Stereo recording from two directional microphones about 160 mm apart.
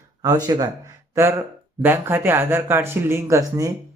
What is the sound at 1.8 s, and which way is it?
A man's voice, 15° right (ahead or behind).